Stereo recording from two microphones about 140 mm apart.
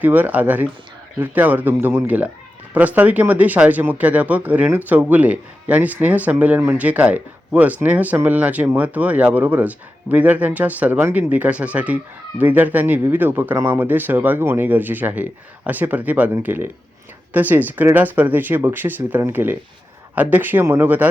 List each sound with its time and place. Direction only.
0.0 s speech: 10° right (ahead or behind)